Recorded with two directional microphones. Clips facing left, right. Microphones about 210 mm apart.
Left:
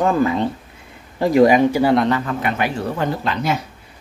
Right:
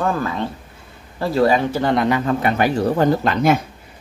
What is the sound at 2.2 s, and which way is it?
Speech, 35° right (ahead or behind).